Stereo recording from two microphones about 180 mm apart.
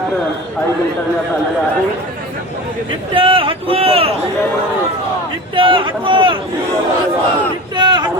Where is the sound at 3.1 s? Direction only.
30° right (ahead or behind).